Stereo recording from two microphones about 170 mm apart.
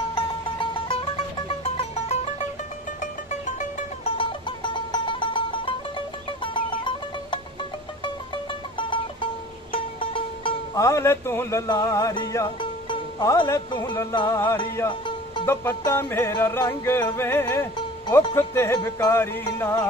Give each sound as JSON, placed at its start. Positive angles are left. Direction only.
{"t": 0.1, "sound": "music", "side_deg": 30}
{"t": 4.2, "sound": "music", "side_deg": 30}
{"t": 8.7, "sound": "music", "side_deg": 30}
{"t": 10.8, "sound": "music", "side_deg": 20}
{"t": 14.9, "sound": "music", "side_deg": 25}
{"t": 15.4, "sound": "music", "side_deg": 15}